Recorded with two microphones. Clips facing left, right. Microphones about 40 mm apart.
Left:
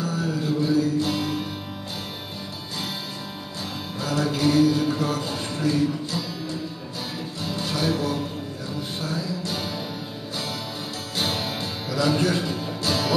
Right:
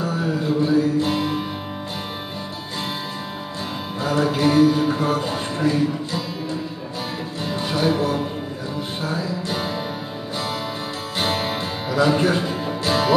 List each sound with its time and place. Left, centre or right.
0.0 s music: right
4.0 s music: right
11.1 s music: right